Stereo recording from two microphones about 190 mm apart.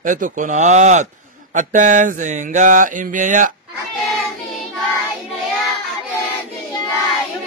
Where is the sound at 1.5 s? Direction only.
40° right (ahead or behind).